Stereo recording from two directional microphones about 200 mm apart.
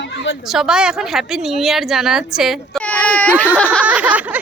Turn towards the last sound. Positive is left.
turn(degrees=-5)  # may be behind; listen again after turning